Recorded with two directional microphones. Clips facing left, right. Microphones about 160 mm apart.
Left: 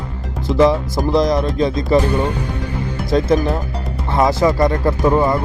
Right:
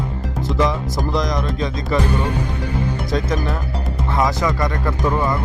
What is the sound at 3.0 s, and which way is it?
Speech, 30° left (ahead or behind).